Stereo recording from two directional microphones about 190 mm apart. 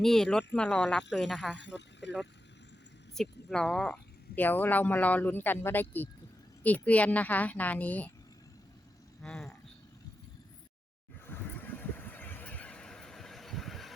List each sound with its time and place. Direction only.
0.0 s speech: centre (ahead or behind)
1.5 s speech: 65° left (ahead or behind)
3.2 s speech: 5° left (ahead or behind)
9.2 s a sound: centre (ahead or behind)
11.3 s neigh: 10° left (ahead or behind)